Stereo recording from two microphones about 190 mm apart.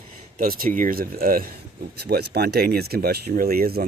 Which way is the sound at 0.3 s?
50° right (ahead or behind).